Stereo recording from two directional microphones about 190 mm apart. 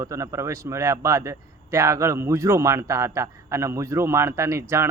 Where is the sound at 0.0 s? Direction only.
15° right (ahead or behind).